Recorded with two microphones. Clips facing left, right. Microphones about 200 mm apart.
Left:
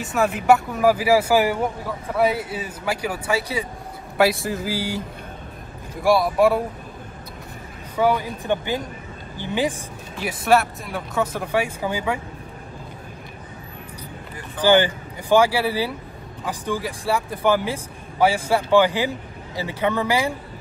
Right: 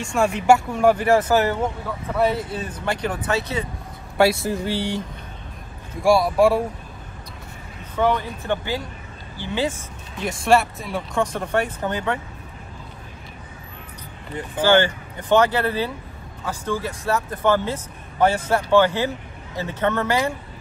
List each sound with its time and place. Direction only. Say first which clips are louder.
0.0 s a man's voice: right 1 dB; 5° left (ahead or behind)
4.2 s speech: right 1 dB; centre (ahead or behind)
7.9 s a man's voice: left 1 dB; 10° left (ahead or behind)
10.1 s speech: even; 5° left (ahead or behind)
14.6 s a man's voice: left 1 dB; 15° left (ahead or behind)